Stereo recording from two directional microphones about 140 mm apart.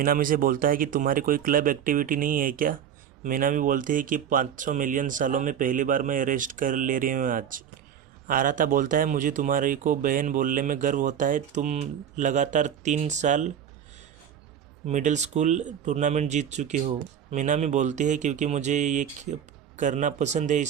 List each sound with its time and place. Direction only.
0.0 s speech: 85° right; by 13.5 s 60° right (ahead or behind)
14.8 s speech: 60° right (ahead or behind)